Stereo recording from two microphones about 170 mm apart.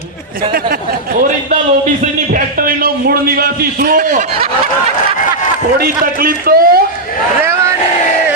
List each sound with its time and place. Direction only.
2.3 s a man's voice: 60° right (ahead or behind)
5.8 s a man's voice: 60° right (ahead or behind)